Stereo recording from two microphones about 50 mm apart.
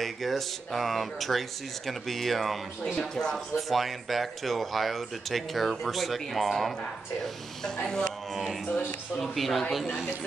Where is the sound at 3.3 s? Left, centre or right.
Centre.